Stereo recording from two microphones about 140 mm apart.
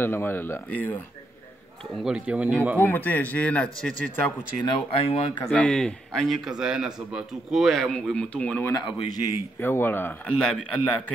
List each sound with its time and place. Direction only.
0.0 s a man's voice: 15° left (ahead or behind)
2.0 s a man's voice: 5° right (ahead or behind)
2.8 s a man's voice: 15° left (ahead or behind)
4.6 s speech: 40° left (ahead or behind)
5.5 s a man's voice: 5° left (ahead or behind)
8.7 s a man's voice: 30° left (ahead or behind)
9.6 s a man's voice: 15° left (ahead or behind)